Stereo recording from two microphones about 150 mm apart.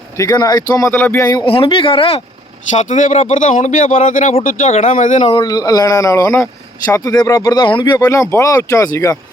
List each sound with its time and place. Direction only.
0.2 s speech: 25° left (ahead or behind)
1.5 s speech: 35° left (ahead or behind)
2.7 s speech: 55° left (ahead or behind)
5.3 s speech: 25° left (ahead or behind)